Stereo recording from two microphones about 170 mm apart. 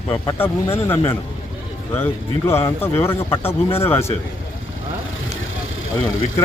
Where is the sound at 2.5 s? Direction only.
15° left (ahead or behind).